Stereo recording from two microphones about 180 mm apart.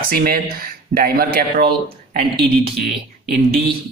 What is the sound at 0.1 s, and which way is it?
Speech, 55° right (ahead or behind).